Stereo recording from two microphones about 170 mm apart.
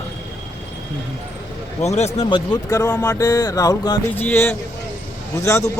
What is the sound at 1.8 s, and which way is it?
Speech, 40° left (ahead or behind).